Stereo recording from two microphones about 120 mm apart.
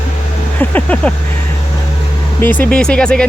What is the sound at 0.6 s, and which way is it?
Speech, 10° left (ahead or behind).